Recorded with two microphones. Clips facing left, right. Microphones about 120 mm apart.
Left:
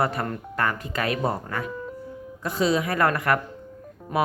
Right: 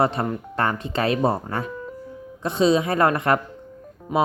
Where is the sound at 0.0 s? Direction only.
25° right (ahead or behind).